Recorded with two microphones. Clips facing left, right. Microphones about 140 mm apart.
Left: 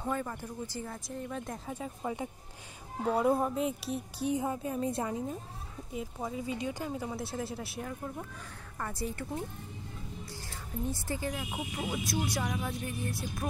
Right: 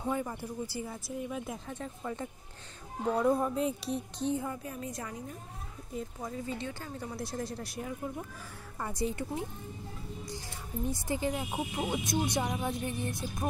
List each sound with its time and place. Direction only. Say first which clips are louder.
0.0 s speech: right 1 dB; 15° right (ahead or behind)
1.7 s speech: left 2 dB; 10° left (ahead or behind)
4.3 s a woman's voice: left 3 dB; 20° left (ahead or behind)
5.9 s speech: left 1 dB; 10° left (ahead or behind)
8.7 s speech: right 3 dB; 15° right (ahead or behind)
10.9 s speech: right 4 dB; 15° right (ahead or behind)